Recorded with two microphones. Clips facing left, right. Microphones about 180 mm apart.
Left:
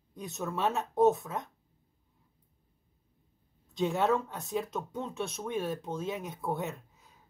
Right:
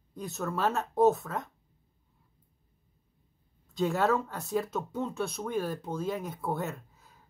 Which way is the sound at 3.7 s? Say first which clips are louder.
Right 1 dB; centre (ahead or behind).